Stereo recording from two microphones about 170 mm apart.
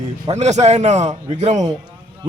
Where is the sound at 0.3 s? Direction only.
40° right (ahead or behind).